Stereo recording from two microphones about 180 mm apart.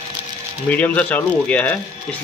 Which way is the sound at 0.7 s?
10° left (ahead or behind).